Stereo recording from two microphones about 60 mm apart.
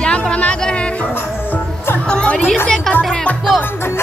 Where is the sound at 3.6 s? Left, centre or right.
Left.